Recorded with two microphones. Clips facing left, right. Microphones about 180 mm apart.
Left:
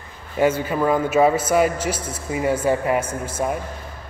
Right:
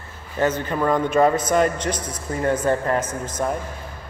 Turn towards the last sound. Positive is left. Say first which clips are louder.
# left 1 dB
turn(degrees=10)  # may be behind; listen again after turning